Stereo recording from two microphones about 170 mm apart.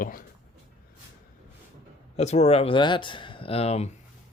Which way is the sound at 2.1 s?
40° left (ahead or behind).